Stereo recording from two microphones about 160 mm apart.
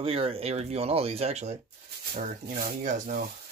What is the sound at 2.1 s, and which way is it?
Speech, 65° right (ahead or behind).